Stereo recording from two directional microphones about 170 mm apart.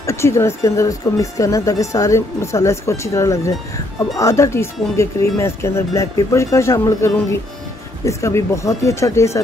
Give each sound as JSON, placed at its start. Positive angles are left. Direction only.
{"t": 0.0, "sound": "a woman's voice", "side_deg": 15}